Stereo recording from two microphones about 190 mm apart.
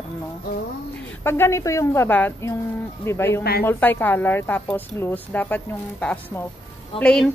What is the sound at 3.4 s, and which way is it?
Speech, 55° left (ahead or behind).